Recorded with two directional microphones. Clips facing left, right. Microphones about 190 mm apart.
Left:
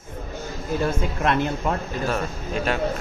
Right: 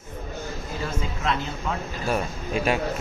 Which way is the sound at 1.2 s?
60° left (ahead or behind).